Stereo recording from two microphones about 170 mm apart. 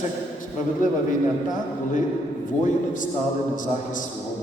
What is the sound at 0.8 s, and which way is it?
A man's voice, 50° left (ahead or behind).